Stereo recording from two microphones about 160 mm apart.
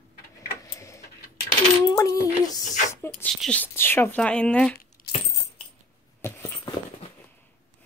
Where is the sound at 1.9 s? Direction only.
20° left (ahead or behind).